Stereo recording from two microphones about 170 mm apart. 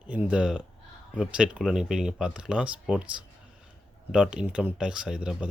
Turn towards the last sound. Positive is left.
turn(degrees=-5)  # may be behind; listen again after turning